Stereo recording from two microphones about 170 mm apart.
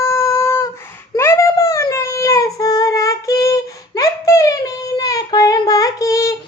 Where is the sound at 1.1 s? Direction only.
15° left (ahead or behind).